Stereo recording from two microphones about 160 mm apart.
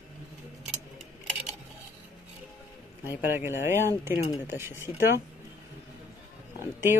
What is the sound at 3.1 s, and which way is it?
Speech, 15° right (ahead or behind).